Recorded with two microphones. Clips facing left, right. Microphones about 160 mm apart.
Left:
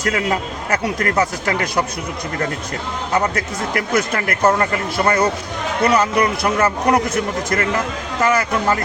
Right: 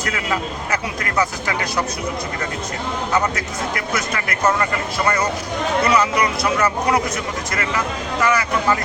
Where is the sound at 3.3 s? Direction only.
50° left (ahead or behind).